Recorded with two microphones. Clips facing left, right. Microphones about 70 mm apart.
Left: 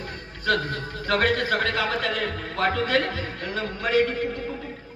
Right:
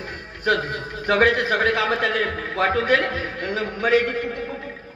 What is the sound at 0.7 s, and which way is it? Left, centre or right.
A man's voice, right.